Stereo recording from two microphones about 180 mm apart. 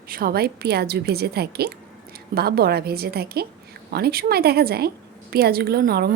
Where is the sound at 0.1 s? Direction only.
55° right (ahead or behind).